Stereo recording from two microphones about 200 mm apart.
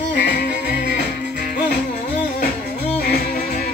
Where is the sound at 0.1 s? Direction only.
60° left (ahead or behind).